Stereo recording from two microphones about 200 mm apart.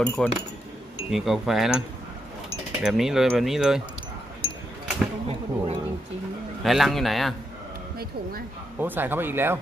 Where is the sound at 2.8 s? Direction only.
Centre (ahead or behind).